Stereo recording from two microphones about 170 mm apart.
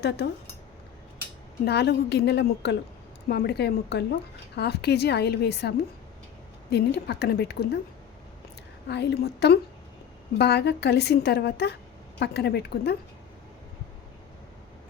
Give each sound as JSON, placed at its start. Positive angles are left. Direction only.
{"t": 0.0, "sound": "a woman's voice", "side_deg": 80}
{"t": 1.6, "sound": "a woman's voice", "side_deg": 75}
{"t": 3.2, "sound": "a woman's voice", "side_deg": 70}
{"t": 8.9, "sound": "a woman's voice", "side_deg": 90}